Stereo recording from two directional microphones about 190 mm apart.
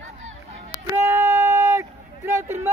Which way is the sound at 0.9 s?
10° right (ahead or behind).